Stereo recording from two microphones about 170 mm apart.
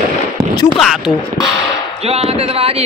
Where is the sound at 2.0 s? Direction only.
35° right (ahead or behind).